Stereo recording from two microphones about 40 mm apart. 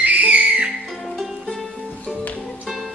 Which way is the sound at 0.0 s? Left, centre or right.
Right.